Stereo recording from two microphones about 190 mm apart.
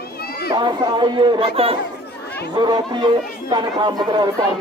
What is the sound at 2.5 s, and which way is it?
Speech, 25° right (ahead or behind).